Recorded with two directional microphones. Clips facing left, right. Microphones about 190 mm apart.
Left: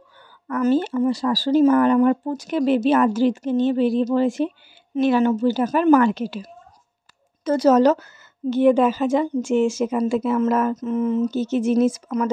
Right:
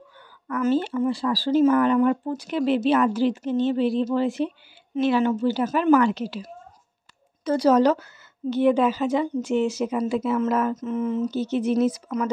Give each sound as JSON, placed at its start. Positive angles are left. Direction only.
{"t": 0.5, "sound": "a woman's voice", "side_deg": 40}